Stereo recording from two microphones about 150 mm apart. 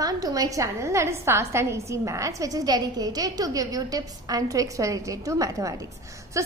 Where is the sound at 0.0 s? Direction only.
25° right (ahead or behind).